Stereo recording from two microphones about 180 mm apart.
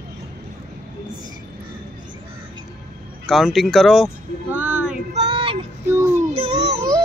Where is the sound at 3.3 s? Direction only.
Centre (ahead or behind).